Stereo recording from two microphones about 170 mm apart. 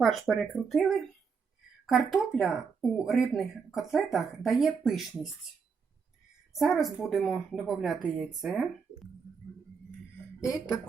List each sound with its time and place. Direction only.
0.0 s speech: centre (ahead or behind)
6.6 s speech: centre (ahead or behind)
10.4 s speech: 5° right (ahead or behind)